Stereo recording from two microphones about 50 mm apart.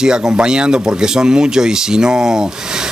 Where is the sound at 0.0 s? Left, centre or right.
Centre.